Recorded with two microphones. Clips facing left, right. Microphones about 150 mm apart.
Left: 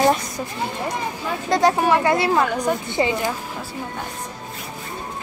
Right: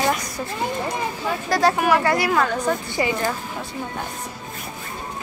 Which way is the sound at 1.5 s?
25° left (ahead or behind).